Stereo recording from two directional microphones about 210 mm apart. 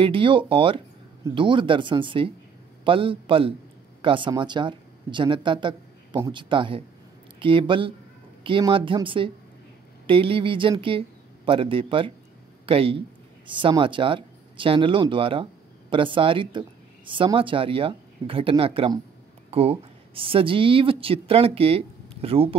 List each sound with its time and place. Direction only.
0.0 s speech: 25° right (ahead or behind)